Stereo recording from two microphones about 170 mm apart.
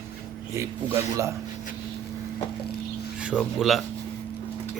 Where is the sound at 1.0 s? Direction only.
15° right (ahead or behind).